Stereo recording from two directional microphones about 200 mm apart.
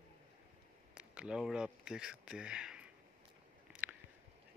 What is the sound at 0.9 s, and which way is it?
Speech, 5° right (ahead or behind).